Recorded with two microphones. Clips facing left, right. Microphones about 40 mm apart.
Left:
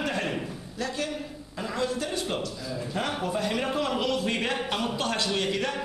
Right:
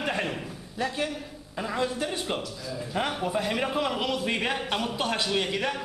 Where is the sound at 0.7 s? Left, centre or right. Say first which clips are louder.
Right 2 dB; centre.